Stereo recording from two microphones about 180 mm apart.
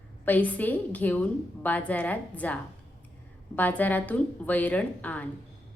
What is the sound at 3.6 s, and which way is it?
A woman's voice, 10° left (ahead or behind).